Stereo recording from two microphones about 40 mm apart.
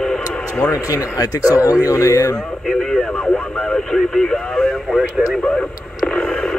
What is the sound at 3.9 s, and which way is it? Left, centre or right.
Speech, centre.